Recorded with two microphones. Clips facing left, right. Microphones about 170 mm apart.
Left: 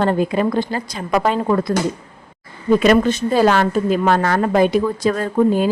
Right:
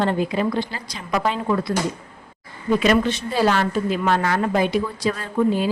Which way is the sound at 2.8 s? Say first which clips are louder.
Left 4 dB; 45° left (ahead or behind).